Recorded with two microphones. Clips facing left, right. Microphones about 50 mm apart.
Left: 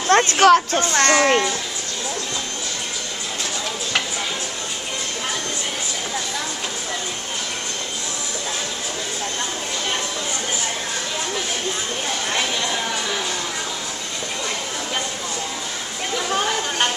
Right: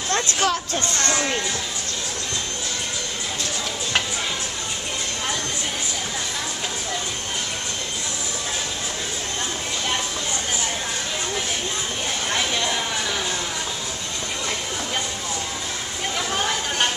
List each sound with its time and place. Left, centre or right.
0.1 s speech: left
0.9 s a child's voice: left